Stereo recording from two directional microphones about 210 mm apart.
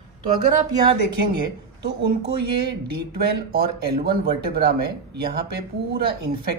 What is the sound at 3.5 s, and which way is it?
Speech, 45° right (ahead or behind).